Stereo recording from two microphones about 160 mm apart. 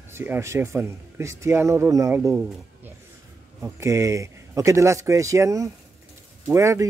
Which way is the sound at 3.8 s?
20° right (ahead or behind).